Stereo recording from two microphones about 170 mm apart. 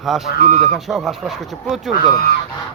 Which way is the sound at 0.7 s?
Centre (ahead or behind).